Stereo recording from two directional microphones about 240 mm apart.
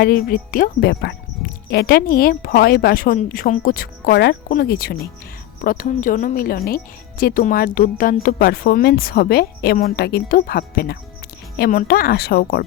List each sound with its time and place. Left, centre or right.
0.0 s speech: left